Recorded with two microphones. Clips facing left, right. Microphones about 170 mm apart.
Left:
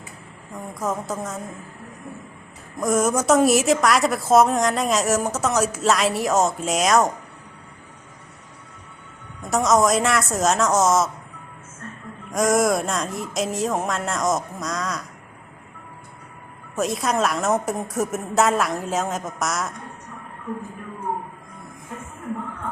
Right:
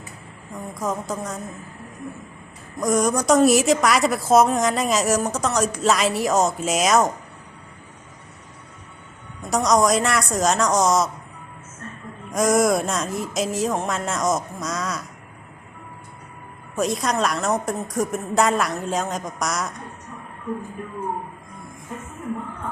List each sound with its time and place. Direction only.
0.8 s a woman's voice: centre (ahead or behind)
2.8 s a woman's voice: 5° left (ahead or behind)
9.5 s a woman's voice: centre (ahead or behind)
12.3 s a woman's voice: centre (ahead or behind)
16.7 s a woman's voice: centre (ahead or behind)